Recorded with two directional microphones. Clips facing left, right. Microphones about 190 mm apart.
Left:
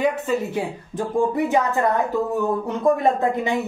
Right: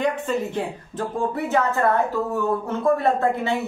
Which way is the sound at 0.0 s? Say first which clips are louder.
Left 2 dB; 10° left (ahead or behind).